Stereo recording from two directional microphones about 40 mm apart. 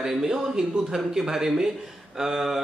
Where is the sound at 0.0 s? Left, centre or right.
Centre.